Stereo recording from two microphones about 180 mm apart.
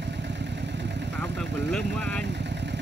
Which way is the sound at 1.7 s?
5° left (ahead or behind).